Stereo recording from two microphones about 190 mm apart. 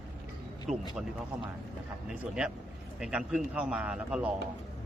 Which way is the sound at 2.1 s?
5° right (ahead or behind).